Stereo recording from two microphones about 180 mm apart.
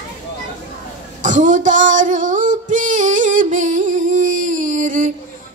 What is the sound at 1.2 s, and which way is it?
Female singing, 45° right (ahead or behind).